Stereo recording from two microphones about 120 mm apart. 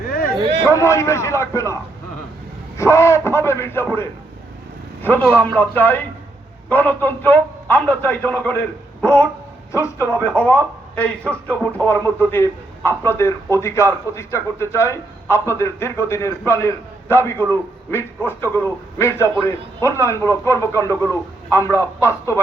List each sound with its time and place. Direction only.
0.6 s a man's voice: 25° left (ahead or behind); by 9.3 s 10° left (ahead or behind)
9.7 s a man's voice: 20° left (ahead or behind)
10.2 s a man's voice: 10° left (ahead or behind); by 22.4 s 25° left (ahead or behind)